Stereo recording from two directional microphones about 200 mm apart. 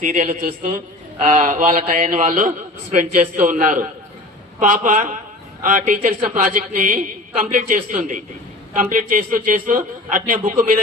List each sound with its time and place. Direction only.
0.0 s a man's voice: 40° right (ahead or behind)